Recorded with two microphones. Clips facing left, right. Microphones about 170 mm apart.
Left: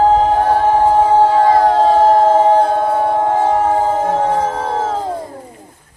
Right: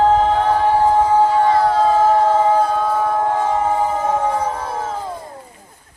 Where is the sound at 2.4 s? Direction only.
55° left (ahead or behind).